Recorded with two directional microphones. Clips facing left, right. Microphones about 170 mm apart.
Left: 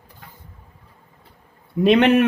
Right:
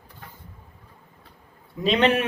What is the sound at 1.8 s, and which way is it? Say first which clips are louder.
Speech: left 6 dB; 60° left (ahead or behind).